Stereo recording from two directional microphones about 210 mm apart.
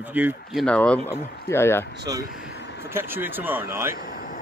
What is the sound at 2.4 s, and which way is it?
Vehicle, 55° left (ahead or behind).